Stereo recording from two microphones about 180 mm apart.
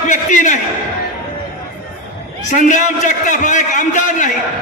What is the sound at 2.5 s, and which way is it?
A man's voice, 45° left (ahead or behind).